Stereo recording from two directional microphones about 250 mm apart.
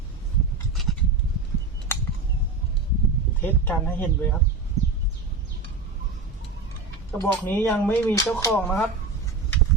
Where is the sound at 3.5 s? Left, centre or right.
Centre.